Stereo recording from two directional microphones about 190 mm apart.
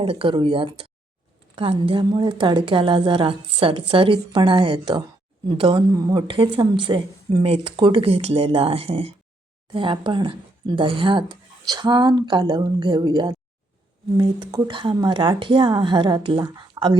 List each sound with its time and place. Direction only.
0.0 s a woman's voice: 30° right (ahead or behind)